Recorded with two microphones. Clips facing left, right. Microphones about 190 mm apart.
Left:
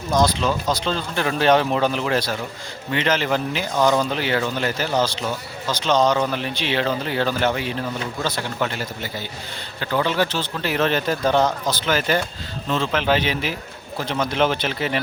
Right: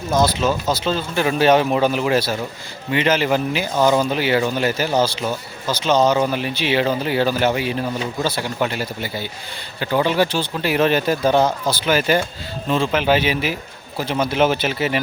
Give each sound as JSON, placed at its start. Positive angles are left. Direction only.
{"t": 0.1, "sound": "speech", "side_deg": -5}